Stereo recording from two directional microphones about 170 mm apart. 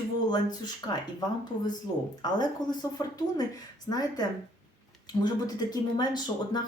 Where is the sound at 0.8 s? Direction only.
20° left (ahead or behind).